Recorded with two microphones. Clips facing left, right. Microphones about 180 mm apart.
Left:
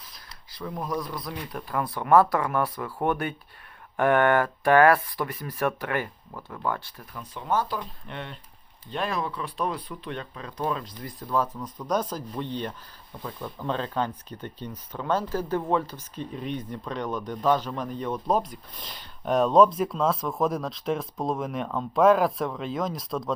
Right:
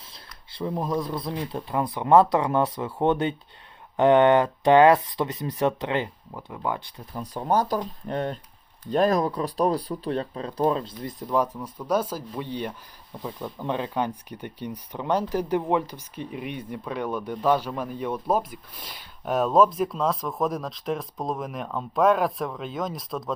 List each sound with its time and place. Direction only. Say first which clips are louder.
0.5 s speech: right 4 dB; 25° right (ahead or behind)
7.2 s speech: right 4 dB; 40° right (ahead or behind); by 23.3 s centre (ahead or behind)